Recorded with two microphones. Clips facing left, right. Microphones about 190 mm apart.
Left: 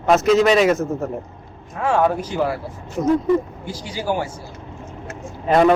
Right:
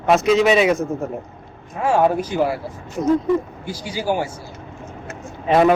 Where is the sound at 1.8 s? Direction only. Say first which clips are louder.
Right 1 dB; 10° right (ahead or behind).